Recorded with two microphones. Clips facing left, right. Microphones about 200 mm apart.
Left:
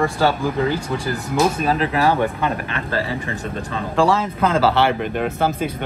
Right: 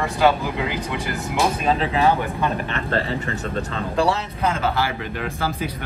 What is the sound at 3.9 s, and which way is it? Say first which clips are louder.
Speech: left 4 dB; 90° left.